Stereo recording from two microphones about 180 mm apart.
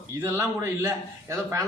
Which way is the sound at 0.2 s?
15° right (ahead or behind).